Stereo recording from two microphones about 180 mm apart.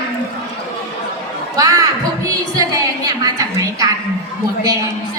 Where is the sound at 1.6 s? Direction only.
20° right (ahead or behind).